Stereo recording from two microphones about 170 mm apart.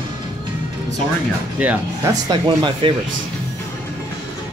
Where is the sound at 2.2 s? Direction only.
25° right (ahead or behind).